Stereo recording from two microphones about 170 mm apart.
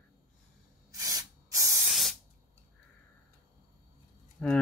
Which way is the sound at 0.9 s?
20° right (ahead or behind).